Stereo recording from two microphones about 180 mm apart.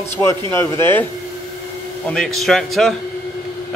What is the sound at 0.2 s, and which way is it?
Speech, 15° left (ahead or behind).